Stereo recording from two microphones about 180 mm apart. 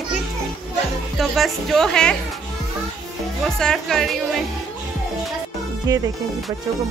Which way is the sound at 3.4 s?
5° left (ahead or behind).